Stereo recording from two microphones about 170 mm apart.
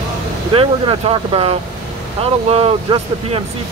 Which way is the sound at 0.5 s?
30° right (ahead or behind).